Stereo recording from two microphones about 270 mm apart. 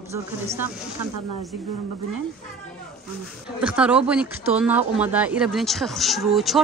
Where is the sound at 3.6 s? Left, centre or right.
Centre.